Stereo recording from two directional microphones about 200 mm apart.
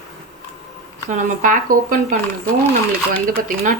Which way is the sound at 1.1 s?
40° right (ahead or behind).